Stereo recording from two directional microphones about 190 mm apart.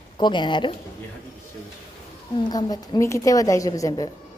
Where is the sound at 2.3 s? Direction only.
20° left (ahead or behind).